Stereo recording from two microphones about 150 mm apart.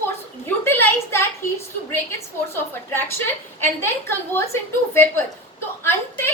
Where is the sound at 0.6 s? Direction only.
15° left (ahead or behind).